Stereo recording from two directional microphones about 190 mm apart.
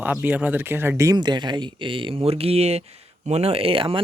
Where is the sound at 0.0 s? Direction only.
10° right (ahead or behind).